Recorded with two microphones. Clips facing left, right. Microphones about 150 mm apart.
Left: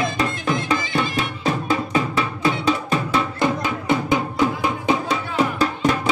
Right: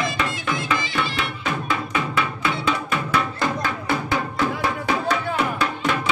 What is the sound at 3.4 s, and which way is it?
Music, 20° left (ahead or behind).